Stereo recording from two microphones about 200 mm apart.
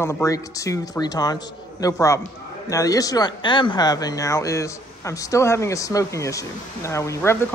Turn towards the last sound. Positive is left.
turn(degrees=15)  # may be behind; listen again after turning